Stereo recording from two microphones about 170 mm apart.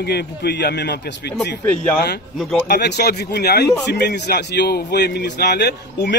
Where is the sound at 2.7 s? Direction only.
75° left (ahead or behind).